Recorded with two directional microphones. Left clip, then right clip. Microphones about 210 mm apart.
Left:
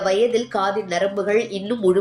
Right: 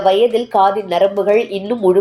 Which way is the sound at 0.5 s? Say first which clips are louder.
Right 8 dB; 5° left (ahead or behind).